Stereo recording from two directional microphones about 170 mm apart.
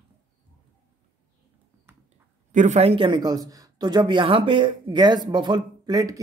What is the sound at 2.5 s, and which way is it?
Speech, 40° right (ahead or behind).